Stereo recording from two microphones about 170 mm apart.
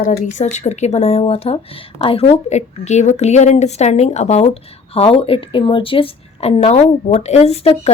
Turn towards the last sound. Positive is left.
turn(degrees=35)  # may be behind; listen again after turning